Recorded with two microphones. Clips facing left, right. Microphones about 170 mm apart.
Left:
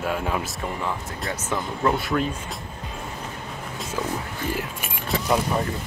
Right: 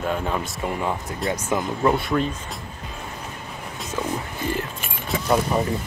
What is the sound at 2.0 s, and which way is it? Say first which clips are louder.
Speech: right 2 dB; centre (ahead or behind).